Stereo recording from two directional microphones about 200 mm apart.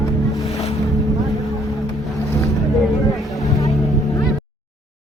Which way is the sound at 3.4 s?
15° left (ahead or behind).